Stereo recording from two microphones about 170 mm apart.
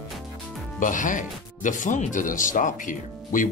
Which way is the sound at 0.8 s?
50° left (ahead or behind).